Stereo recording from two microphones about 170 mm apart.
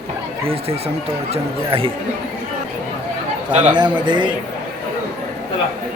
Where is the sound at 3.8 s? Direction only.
25° right (ahead or behind).